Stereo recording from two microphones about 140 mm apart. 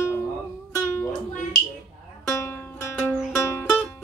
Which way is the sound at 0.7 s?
15° left (ahead or behind).